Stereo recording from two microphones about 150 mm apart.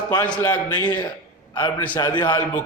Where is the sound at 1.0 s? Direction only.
30° left (ahead or behind).